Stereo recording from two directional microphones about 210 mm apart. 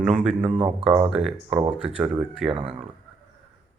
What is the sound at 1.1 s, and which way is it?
Speech, centre (ahead or behind).